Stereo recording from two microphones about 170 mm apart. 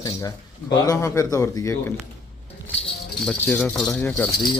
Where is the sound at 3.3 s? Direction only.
10° left (ahead or behind).